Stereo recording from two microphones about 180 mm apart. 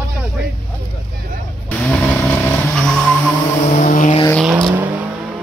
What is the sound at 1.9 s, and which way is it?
Vehicle, 15° left (ahead or behind).